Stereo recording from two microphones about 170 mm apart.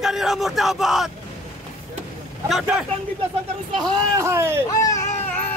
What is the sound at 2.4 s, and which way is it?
Speech, centre (ahead or behind).